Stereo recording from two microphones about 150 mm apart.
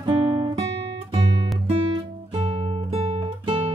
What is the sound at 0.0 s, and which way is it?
Guitar, 25° right (ahead or behind).